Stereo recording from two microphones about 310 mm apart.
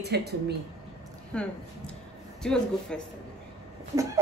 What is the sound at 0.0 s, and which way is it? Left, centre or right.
Speech, right.